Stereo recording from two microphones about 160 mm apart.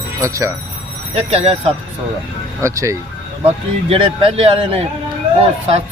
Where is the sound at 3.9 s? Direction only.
35° right (ahead or behind).